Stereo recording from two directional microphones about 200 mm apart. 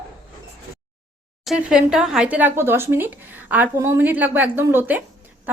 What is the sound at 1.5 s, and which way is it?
A woman's voice, 5° right (ahead or behind).